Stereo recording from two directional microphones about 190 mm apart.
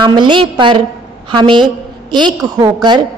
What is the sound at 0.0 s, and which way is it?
A woman's voice, 25° right (ahead or behind).